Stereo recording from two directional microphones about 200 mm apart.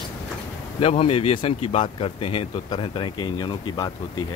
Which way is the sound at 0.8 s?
30° left (ahead or behind).